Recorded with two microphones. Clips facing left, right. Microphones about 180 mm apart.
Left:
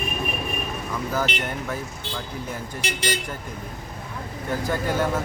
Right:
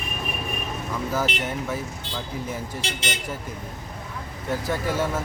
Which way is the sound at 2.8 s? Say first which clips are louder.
Left 4 dB; 25° right (ahead or behind).